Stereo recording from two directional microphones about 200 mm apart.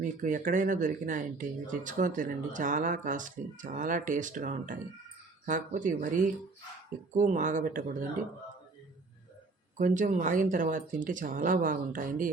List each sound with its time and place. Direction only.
0.0 s speech: 40° right (ahead or behind)
9.7 s speech: 40° right (ahead or behind)